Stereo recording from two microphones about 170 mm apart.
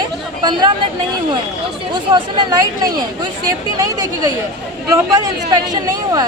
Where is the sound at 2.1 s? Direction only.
25° right (ahead or behind).